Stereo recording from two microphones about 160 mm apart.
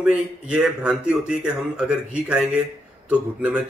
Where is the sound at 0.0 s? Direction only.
5° right (ahead or behind).